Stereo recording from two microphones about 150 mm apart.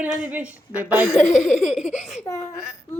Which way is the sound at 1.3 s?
50° left (ahead or behind).